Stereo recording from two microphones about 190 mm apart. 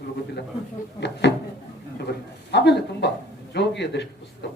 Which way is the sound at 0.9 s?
65° left (ahead or behind).